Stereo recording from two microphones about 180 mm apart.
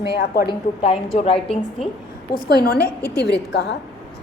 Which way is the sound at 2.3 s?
55° left (ahead or behind).